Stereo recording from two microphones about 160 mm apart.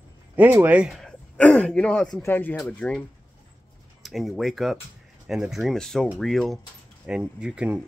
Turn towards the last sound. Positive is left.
turn(degrees=-5)  # may be behind; listen again after turning